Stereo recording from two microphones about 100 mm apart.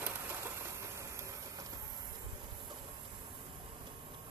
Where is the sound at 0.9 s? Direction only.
30° right (ahead or behind).